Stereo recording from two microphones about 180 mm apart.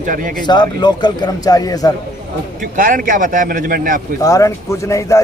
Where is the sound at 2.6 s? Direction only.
50° right (ahead or behind).